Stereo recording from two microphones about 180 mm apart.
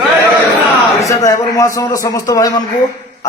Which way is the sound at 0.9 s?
15° left (ahead or behind).